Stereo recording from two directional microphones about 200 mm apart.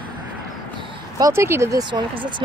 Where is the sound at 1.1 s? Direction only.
15° right (ahead or behind).